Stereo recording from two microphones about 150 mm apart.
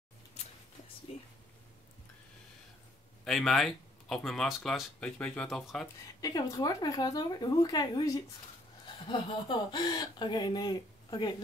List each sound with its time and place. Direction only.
1.1 s a sound: 40° left (ahead or behind)
3.3 s speech: centre (ahead or behind)
6.2 s speech: 25° left (ahead or behind)